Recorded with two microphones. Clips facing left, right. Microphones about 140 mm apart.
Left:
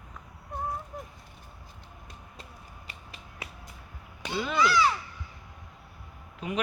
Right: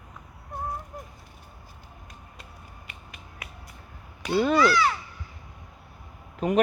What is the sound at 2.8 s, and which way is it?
Finger snapping, 30° left (ahead or behind).